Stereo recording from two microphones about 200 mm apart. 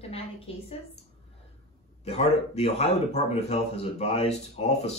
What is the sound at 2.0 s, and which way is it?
Speech, 30° left (ahead or behind).